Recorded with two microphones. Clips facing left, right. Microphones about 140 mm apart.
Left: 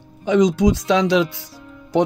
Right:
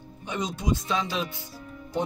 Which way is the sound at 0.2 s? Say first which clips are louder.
Left 16 dB; 90° left.